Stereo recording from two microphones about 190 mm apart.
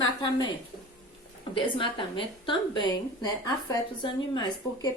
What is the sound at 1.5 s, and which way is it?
A woman's voice, 25° left (ahead or behind).